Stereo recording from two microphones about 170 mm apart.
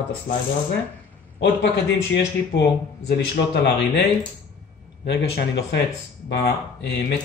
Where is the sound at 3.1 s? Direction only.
90° left.